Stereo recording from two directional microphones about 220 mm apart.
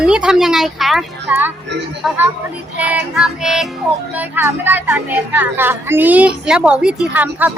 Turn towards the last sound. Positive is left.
turn(degrees=-10)  # may be behind; listen again after turning